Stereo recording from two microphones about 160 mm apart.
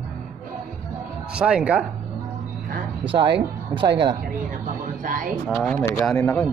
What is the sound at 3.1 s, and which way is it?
Speech, 30° right (ahead or behind).